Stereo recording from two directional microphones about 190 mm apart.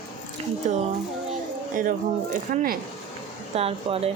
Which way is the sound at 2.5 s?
45° right (ahead or behind).